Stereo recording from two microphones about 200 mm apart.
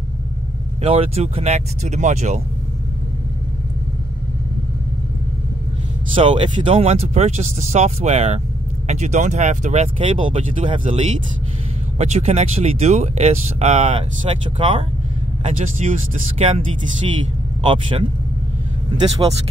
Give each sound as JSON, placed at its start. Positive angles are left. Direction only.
{"t": 0.8, "sound": "speech", "side_deg": -30}
{"t": 6.1, "sound": "speech", "side_deg": -25}
{"t": 17.6, "sound": "speech", "side_deg": -25}